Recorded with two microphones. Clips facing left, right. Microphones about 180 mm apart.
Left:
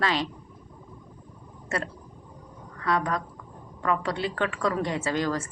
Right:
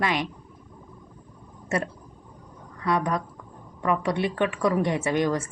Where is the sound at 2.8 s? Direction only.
20° right (ahead or behind).